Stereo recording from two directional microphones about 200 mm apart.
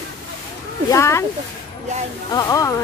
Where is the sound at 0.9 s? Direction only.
15° left (ahead or behind).